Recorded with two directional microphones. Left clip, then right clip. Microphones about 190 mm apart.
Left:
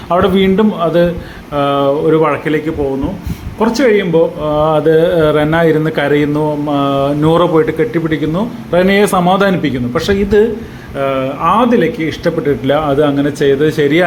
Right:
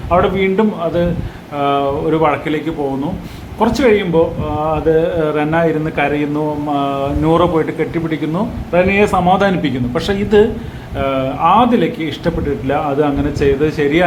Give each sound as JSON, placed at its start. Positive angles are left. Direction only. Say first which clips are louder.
{"t": 0.1, "sound": "a man's voice", "louder": "left 2 dB", "side_deg": 30}
{"t": 3.8, "sound": "a man's voice", "louder": "left 3 dB", "side_deg": 10}
{"t": 4.4, "sound": "speech", "louder": "left 5 dB", "side_deg": 25}
{"t": 8.7, "sound": "a man's voice", "louder": "left 2 dB", "side_deg": 25}